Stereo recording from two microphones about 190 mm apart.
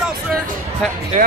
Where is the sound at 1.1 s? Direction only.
40° right (ahead or behind).